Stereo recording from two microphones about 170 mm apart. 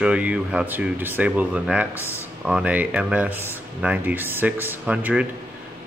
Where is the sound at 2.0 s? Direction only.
15° left (ahead or behind).